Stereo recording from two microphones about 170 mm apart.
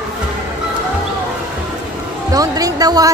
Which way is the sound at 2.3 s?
20° right (ahead or behind).